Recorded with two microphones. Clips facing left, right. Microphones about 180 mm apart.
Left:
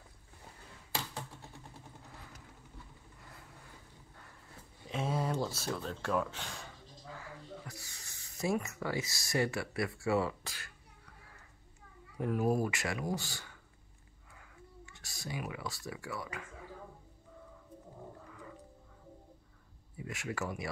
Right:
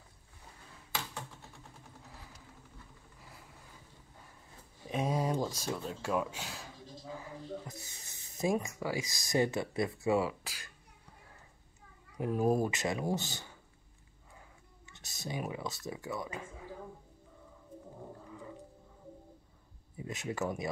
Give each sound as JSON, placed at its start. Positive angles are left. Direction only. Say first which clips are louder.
{"t": 4.8, "sound": "speech", "louder": "right 2 dB", "side_deg": -15}
{"t": 7.1, "sound": "speech", "louder": "right 5 dB", "side_deg": -20}
{"t": 12.2, "sound": "speech", "louder": "right 2 dB", "side_deg": -25}
{"t": 14.9, "sound": "a sound", "louder": "right 3 dB", "side_deg": -20}
{"t": 15.4, "sound": "speech", "louder": "right 3 dB", "side_deg": -20}
{"t": 20.0, "sound": "speech", "louder": "right 3 dB", "side_deg": -20}